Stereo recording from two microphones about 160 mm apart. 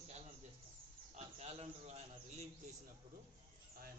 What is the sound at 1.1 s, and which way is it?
Speech, 40° right (ahead or behind).